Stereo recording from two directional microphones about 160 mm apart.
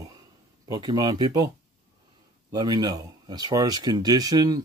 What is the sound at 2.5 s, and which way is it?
Speech, 25° right (ahead or behind).